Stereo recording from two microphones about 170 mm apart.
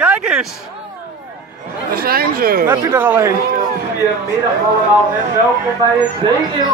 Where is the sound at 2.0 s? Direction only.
60° right (ahead or behind).